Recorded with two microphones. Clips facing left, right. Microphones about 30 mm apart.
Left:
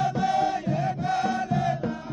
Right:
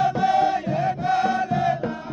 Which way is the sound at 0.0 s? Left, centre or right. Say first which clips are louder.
Right 5 dB; centre.